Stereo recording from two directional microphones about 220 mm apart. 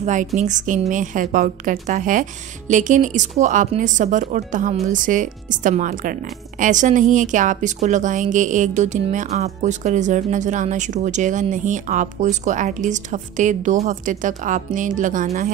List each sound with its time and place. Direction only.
0.0 s a woman's voice: 35° right (ahead or behind)